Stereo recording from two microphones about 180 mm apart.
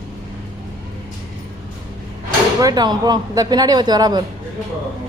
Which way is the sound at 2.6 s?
20° right (ahead or behind).